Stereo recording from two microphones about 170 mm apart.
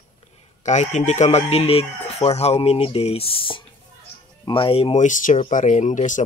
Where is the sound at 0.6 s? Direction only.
45° left (ahead or behind).